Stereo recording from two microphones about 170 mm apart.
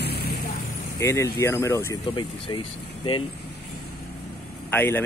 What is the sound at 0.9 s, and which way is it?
Speech, 15° left (ahead or behind).